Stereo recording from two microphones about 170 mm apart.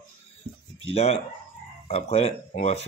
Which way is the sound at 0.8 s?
35° left (ahead or behind).